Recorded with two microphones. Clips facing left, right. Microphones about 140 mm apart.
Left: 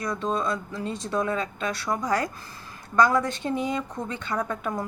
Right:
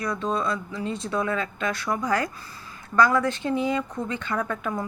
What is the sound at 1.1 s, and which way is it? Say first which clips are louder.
A woman's voice: left 1 dB; 25° left (ahead or behind).